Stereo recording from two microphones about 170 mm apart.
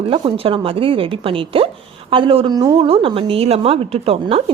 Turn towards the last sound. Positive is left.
turn(degrees=-35)  # may be behind; listen again after turning